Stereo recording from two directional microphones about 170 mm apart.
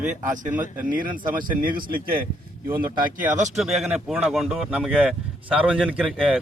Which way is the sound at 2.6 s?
15° right (ahead or behind).